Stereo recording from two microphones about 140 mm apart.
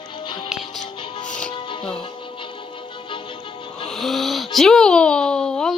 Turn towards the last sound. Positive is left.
turn(degrees=5)  # may be behind; listen again after turning